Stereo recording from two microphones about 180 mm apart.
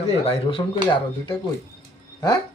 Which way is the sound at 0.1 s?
35° left (ahead or behind).